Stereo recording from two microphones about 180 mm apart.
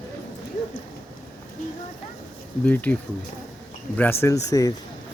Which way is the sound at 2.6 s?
10° left (ahead or behind).